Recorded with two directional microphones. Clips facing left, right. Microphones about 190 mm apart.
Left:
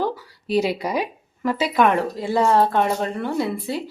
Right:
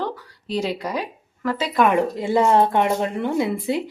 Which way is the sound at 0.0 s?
10° left (ahead or behind).